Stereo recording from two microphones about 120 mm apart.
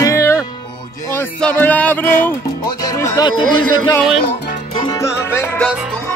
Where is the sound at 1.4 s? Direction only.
10° left (ahead or behind).